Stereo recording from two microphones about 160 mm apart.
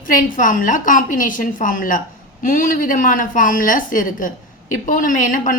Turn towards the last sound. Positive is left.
turn(degrees=55)  # may be behind; listen again after turning